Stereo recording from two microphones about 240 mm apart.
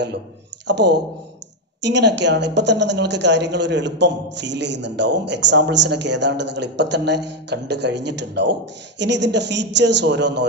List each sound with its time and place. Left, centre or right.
0.7 s a woman's voice: right